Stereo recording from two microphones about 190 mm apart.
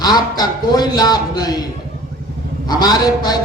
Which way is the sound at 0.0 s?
20° left (ahead or behind).